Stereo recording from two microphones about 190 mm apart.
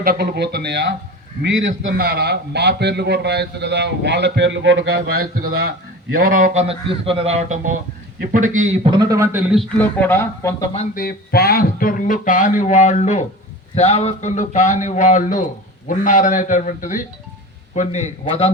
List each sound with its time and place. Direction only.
0.0 s a man's voice: 55° right (ahead or behind)
2.0 s a man's voice: 55° right (ahead or behind); by 9.4 s 15° right (ahead or behind)
9.5 s a man's voice: 5° left (ahead or behind)
10.9 s a sound: 50° left (ahead or behind)
13.7 s a man's voice: 35° left (ahead or behind)
15.9 s a sound: 40° left (ahead or behind)
17.7 s a man's voice: 35° left (ahead or behind)